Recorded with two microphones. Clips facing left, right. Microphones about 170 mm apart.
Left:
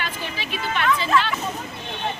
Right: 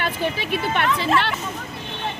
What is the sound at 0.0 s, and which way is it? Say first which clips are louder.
Speech: right 6 dB; 55° right (ahead or behind).